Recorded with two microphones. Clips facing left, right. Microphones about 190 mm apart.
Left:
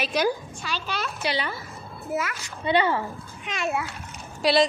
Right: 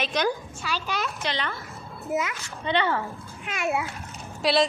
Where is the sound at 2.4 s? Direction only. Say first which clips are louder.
Left 3 dB; 15° left (ahead or behind).